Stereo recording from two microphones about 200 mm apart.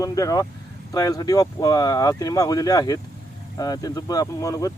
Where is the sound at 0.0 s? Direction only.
15° left (ahead or behind).